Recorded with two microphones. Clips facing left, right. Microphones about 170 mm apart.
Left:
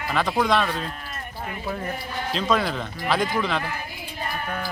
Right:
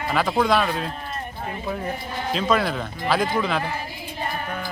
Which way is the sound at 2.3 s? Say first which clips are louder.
Right 2 dB; 5° right (ahead or behind).